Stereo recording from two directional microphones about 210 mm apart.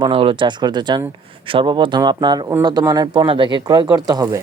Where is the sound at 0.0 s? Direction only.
25° right (ahead or behind).